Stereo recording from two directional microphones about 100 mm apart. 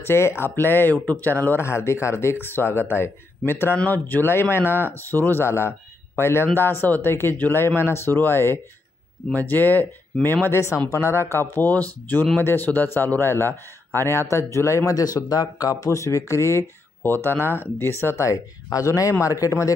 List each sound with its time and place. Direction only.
0.0 s a man's voice: 25° left (ahead or behind)